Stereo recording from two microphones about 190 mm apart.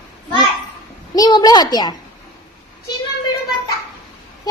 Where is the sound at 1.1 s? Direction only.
20° left (ahead or behind).